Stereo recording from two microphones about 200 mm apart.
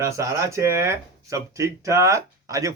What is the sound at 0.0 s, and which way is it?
Speech, 15° right (ahead or behind).